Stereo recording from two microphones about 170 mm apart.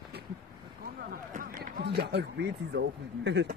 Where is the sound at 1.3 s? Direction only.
55° right (ahead or behind); by 3.5 s 90° right.